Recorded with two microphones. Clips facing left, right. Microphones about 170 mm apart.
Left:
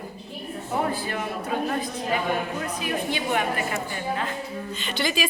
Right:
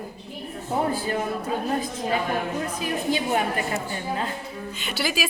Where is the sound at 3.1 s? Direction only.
35° right (ahead or behind).